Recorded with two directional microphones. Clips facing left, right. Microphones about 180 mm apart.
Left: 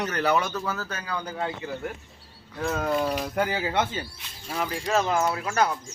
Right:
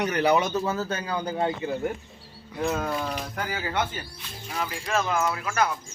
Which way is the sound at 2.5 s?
15° right (ahead or behind).